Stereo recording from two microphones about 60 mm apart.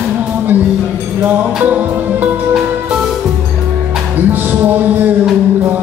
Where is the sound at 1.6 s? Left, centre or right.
Right.